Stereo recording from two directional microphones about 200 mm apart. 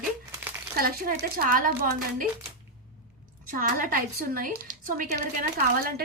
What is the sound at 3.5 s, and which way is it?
Speech, 45° right (ahead or behind).